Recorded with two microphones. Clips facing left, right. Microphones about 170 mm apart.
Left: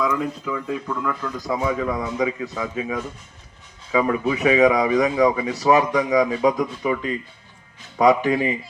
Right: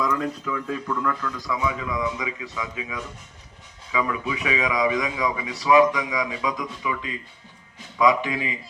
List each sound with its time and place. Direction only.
0.0 s speech: 5° left (ahead or behind)
1.5 s speech: 40° left (ahead or behind)